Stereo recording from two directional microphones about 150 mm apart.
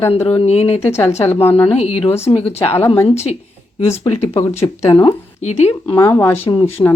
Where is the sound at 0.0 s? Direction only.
45° left (ahead or behind).